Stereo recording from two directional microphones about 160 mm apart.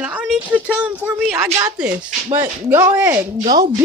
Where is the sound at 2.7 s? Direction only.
10° right (ahead or behind).